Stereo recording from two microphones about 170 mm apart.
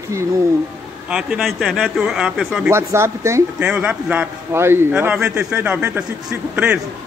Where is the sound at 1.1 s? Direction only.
5° right (ahead or behind).